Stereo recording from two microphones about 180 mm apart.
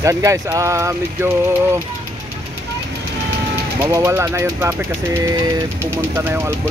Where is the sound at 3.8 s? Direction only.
15° right (ahead or behind).